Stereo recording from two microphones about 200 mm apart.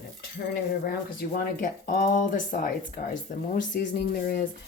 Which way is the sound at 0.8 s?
45° left (ahead or behind).